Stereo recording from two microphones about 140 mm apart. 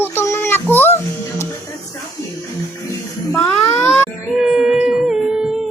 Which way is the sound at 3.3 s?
10° left (ahead or behind).